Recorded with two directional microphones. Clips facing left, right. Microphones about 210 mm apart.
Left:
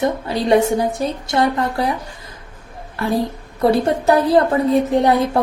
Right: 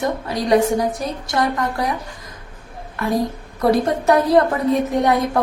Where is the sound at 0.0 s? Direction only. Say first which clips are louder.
Left 3 dB; 25° left (ahead or behind).